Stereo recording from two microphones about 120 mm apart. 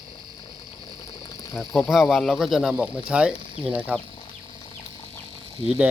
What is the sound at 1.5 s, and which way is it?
Speech, centre (ahead or behind).